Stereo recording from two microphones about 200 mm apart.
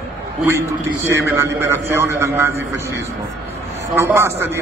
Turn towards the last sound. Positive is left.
turn(degrees=-10)  # may be behind; listen again after turning